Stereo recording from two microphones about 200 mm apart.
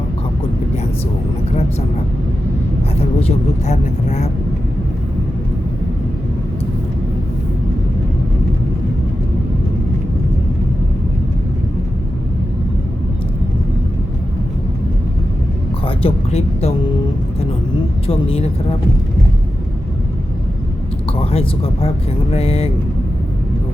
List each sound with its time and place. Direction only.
3.0 s speech: 30° left (ahead or behind)
16.0 s speech: 30° left (ahead or behind)
18.1 s speech: 30° left (ahead or behind)
21.1 s speech: 30° left (ahead or behind)